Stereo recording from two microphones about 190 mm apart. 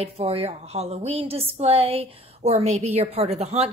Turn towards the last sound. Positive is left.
turn(degrees=-35)  # may be behind; listen again after turning